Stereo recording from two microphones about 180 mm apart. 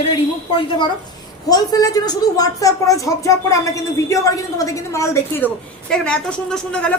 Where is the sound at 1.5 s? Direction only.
20° left (ahead or behind).